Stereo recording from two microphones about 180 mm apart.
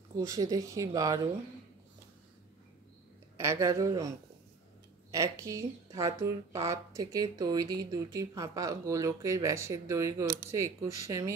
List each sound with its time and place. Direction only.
0.2 s speech: 20° right (ahead or behind)
3.3 s speech: 15° right (ahead or behind)
5.1 s speech: 15° right (ahead or behind)